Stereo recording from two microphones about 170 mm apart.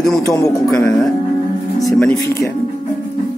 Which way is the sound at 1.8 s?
5° left (ahead or behind).